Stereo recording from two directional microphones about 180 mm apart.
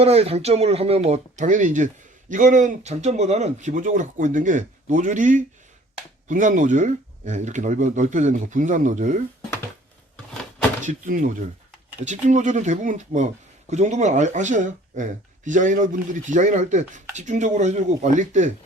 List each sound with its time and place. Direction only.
0.0 s speech: 35° right (ahead or behind)
10.8 s speech: 45° right (ahead or behind)